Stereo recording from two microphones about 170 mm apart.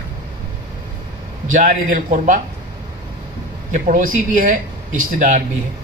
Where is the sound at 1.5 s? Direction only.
50° right (ahead or behind).